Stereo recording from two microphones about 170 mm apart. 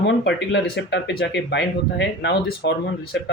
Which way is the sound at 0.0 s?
90° left.